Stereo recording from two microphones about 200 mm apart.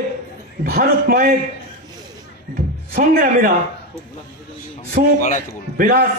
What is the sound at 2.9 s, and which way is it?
Speech, 45° right (ahead or behind).